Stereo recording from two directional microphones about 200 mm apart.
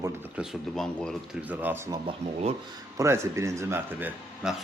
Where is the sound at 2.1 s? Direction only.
30° right (ahead or behind).